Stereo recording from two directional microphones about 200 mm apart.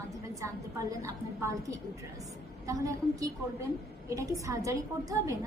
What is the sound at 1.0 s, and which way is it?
A woman's voice, 15° right (ahead or behind).